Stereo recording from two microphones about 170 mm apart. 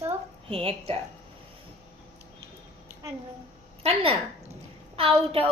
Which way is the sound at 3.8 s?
35° right (ahead or behind).